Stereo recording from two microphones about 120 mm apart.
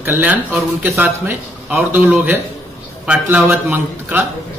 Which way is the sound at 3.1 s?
10° right (ahead or behind).